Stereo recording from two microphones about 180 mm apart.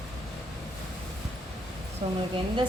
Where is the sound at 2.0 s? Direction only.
30° right (ahead or behind).